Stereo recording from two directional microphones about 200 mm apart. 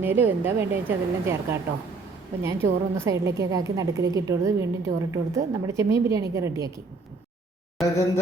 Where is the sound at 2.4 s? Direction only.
15° right (ahead or behind).